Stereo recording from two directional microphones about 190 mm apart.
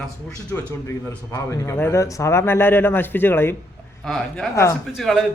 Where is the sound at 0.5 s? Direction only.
10° left (ahead or behind).